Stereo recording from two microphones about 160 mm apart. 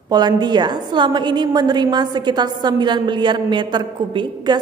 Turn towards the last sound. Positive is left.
turn(degrees=-30)  # may be behind; listen again after turning